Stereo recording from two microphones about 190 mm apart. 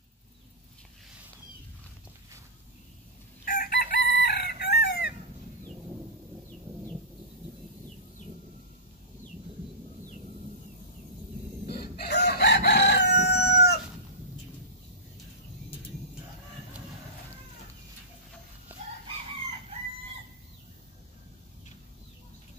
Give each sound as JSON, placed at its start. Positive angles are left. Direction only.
{"t": 3.4, "sound": "chicken", "side_deg": 45}
{"t": 11.7, "sound": "crowing", "side_deg": 60}
{"t": 18.7, "sound": "chicken", "side_deg": -10}